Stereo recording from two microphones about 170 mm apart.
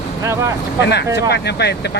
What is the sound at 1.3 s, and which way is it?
Speech, 75° left (ahead or behind).